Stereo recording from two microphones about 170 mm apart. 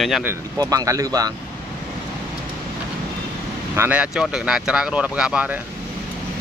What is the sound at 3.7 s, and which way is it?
Speech, 10° right (ahead or behind).